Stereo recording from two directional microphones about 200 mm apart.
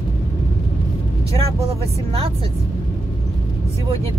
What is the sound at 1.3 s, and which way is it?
Speech, 30° right (ahead or behind).